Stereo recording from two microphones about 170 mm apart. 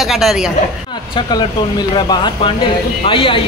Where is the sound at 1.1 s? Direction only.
25° left (ahead or behind).